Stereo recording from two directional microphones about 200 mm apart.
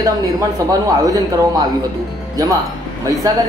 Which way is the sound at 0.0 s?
20° right (ahead or behind).